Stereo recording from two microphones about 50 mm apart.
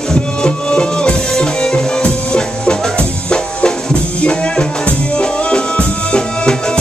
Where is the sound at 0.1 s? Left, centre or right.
Centre.